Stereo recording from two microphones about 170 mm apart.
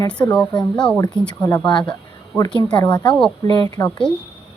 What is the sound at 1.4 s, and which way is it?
Speech, 20° left (ahead or behind).